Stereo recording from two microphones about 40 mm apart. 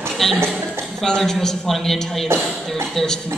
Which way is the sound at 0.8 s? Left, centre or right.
Centre.